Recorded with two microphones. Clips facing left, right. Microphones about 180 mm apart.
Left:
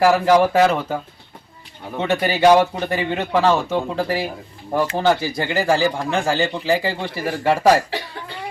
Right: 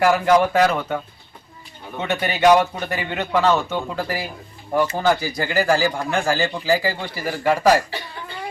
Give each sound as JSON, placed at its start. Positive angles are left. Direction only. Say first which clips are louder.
{"t": 0.0, "sound": "speech", "louder": "left 2 dB", "side_deg": 30}
{"t": 2.0, "sound": "speech", "louder": "left 3 dB", "side_deg": 30}